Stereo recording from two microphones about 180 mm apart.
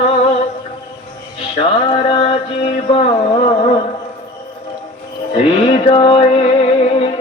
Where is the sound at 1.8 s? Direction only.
30° left (ahead or behind).